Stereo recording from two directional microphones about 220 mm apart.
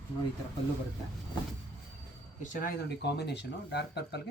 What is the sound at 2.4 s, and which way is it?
Speech, 45° left (ahead or behind).